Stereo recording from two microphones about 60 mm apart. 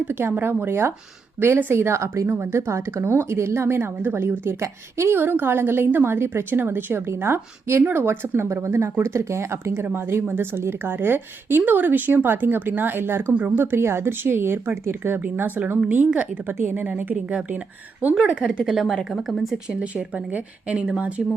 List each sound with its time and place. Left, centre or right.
0.1 s a woman's voice: right
1.7 s a woman's voice: right
9.8 s a woman's voice: right
15.2 s a woman's voice: right
18.1 s a woman's voice: centre
19.8 s speech: centre